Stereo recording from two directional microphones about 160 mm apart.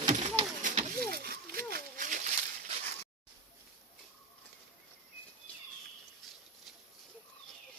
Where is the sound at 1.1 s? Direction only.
70° right (ahead or behind); by 2.2 s 55° right (ahead or behind).